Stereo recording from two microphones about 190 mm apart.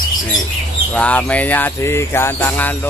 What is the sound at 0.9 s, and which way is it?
Speech, 5° left (ahead or behind).